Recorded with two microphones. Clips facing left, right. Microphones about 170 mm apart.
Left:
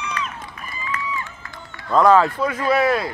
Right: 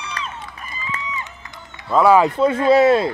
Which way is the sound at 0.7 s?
20° right (ahead or behind).